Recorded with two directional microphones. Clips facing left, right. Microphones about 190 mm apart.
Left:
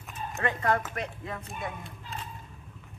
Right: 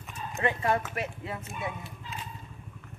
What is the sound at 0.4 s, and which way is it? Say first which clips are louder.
Speech: even; 15° right (ahead or behind).